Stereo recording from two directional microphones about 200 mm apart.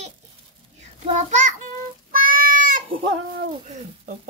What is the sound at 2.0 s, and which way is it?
Child singing, 45° right (ahead or behind).